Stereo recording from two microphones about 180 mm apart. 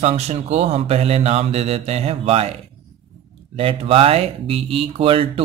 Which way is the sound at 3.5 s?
30° right (ahead or behind).